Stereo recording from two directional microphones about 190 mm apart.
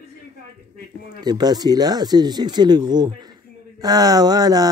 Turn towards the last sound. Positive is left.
turn(degrees=-20)  # may be behind; listen again after turning